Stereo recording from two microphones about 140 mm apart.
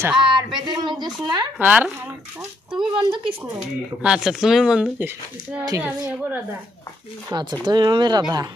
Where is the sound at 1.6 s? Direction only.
10° right (ahead or behind).